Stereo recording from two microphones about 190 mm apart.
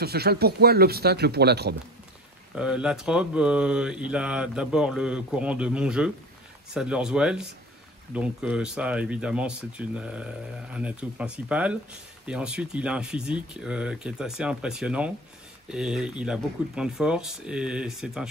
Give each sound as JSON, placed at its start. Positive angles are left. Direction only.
{"t": 0.0, "sound": "speech", "side_deg": -55}
{"t": 2.5, "sound": "speech", "side_deg": -5}